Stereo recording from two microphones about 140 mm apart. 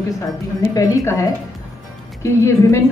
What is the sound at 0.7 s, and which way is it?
Speech, 20° left (ahead or behind).